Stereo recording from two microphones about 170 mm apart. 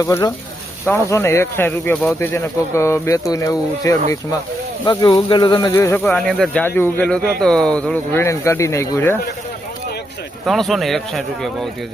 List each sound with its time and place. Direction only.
0.0 s speech: 15° left (ahead or behind)
6.1 s speech: centre (ahead or behind)
10.4 s a man's voice: centre (ahead or behind)